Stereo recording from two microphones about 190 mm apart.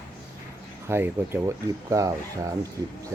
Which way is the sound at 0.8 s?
10° right (ahead or behind).